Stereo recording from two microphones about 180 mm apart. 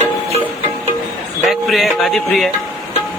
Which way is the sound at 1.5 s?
Centre (ahead or behind).